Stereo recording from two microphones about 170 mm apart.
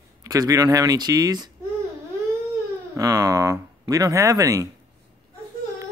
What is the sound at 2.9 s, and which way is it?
Speech, 20° right (ahead or behind).